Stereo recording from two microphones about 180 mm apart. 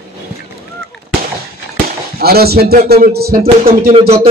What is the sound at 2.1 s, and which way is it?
A man's voice, 60° right (ahead or behind).